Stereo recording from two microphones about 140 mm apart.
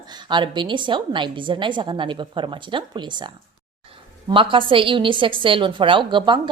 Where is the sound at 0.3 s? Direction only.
35° right (ahead or behind).